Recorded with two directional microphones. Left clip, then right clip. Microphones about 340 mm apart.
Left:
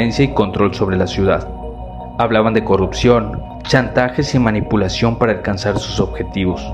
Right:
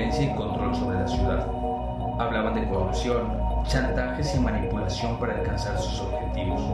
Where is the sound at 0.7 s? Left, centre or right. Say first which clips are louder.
Left 10 dB; centre.